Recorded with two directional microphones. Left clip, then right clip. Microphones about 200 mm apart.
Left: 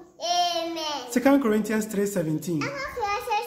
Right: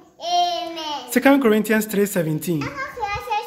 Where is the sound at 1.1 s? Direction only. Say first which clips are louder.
Right 6 dB; 45° right (ahead or behind).